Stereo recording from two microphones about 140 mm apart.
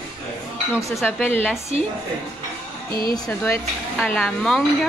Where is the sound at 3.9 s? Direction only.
5° left (ahead or behind).